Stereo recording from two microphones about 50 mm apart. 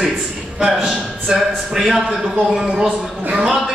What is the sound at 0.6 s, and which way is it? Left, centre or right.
A man's voice, centre.